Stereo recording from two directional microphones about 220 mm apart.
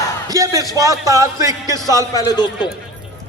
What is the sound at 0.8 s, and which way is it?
Speech, 15° right (ahead or behind).